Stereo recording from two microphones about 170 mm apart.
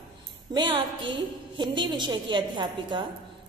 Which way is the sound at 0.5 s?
25° right (ahead or behind).